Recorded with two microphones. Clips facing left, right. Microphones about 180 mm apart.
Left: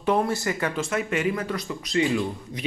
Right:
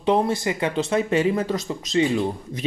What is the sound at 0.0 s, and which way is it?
Speech, 20° right (ahead or behind).